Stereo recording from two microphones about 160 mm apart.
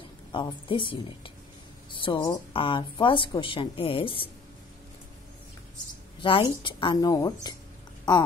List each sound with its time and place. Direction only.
0.3 s speech: 30° left (ahead or behind)
6.2 s a woman's voice: 30° left (ahead or behind)